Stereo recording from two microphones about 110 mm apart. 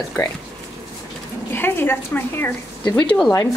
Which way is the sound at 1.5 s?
20° left (ahead or behind).